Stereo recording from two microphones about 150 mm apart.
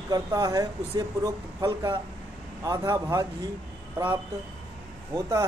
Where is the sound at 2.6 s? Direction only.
25° right (ahead or behind).